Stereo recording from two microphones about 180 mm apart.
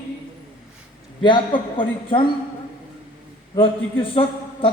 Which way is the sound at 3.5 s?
30° left (ahead or behind).